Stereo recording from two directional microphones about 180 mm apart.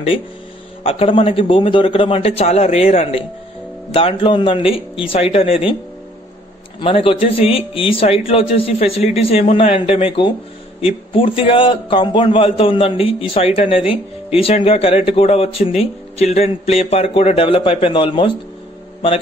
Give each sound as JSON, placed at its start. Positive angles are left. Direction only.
{"t": 0.8, "sound": "a man's voice", "side_deg": 30}
{"t": 6.8, "sound": "a man's voice", "side_deg": 30}